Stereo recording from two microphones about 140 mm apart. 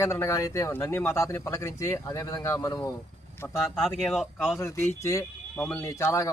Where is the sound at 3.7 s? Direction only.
Centre (ahead or behind).